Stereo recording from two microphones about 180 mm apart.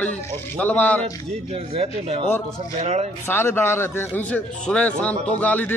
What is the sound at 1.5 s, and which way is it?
Speech, 35° right (ahead or behind).